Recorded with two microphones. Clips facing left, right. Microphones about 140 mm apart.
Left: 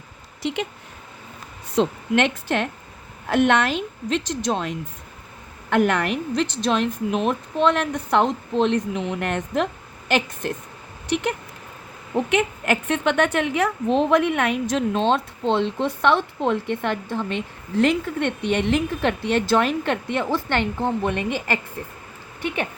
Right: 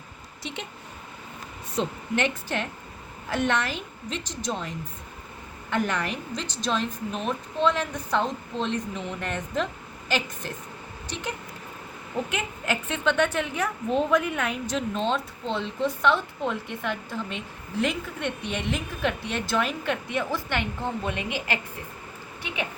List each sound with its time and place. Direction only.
1.7 s a woman's voice: 85° left
5.7 s a woman's voice: 65° left (ahead or behind)